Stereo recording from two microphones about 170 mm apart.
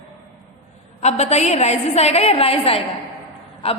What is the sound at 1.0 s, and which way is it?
A woman's voice, 40° left (ahead or behind).